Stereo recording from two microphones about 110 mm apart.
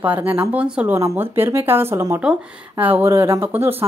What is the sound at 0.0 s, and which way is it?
Speech, 15° right (ahead or behind).